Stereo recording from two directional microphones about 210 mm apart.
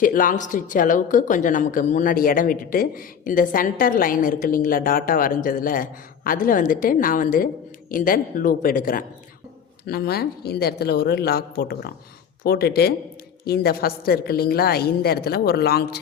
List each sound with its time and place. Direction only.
0.0 s a woman's voice: 40° left (ahead or behind)